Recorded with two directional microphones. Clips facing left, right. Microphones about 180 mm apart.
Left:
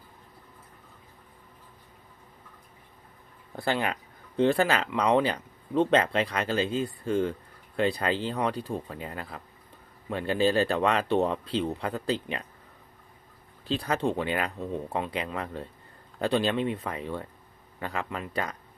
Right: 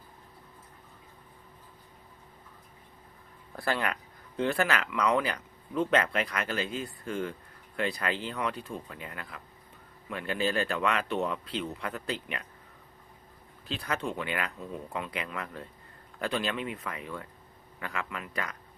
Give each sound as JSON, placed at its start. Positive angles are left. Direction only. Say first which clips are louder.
{"t": 3.5, "sound": "speech", "louder": "left 3 dB", "side_deg": 25}
{"t": 13.7, "sound": "speech", "louder": "left 6 dB", "side_deg": 30}